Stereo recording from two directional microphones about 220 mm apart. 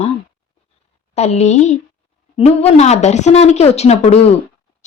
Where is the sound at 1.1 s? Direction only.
30° left (ahead or behind).